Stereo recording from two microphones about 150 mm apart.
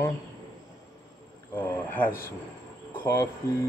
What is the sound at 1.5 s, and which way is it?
Speech, 10° left (ahead or behind).